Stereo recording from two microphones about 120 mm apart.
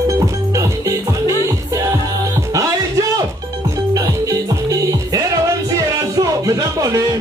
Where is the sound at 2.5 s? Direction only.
30° right (ahead or behind).